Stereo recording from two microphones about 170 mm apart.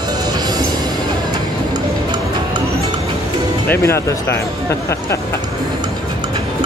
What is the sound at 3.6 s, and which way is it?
Speech, 15° left (ahead or behind).